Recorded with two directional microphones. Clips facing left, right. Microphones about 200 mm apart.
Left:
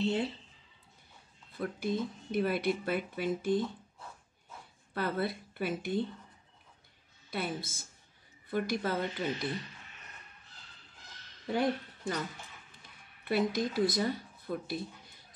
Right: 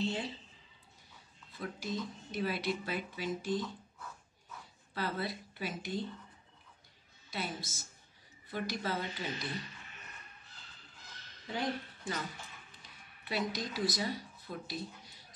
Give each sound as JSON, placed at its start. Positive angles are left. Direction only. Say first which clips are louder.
{"t": 0.0, "sound": "speech", "louder": "left 5 dB", "side_deg": 60}
{"t": 1.5, "sound": "speech", "louder": "left 6 dB", "side_deg": 55}
{"t": 4.9, "sound": "speech", "louder": "left 4 dB", "side_deg": 55}
{"t": 7.2, "sound": "speech", "louder": "left 4 dB", "side_deg": 55}
{"t": 11.4, "sound": "speech", "louder": "left 6 dB", "side_deg": 55}
{"t": 12.8, "sound": "a sound", "louder": "left 10 dB", "side_deg": 55}